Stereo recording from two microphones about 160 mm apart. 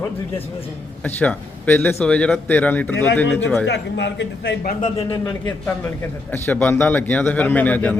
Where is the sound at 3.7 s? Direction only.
90° left; by 4.9 s 55° left (ahead or behind).